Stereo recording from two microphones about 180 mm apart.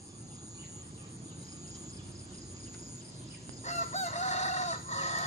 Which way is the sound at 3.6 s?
40° left (ahead or behind).